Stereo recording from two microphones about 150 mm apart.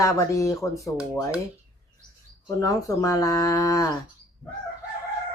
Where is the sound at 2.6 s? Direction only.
25° left (ahead or behind).